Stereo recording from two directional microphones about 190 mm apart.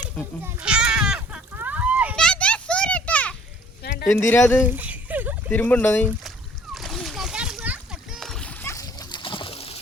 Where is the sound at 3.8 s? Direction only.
55° left (ahead or behind).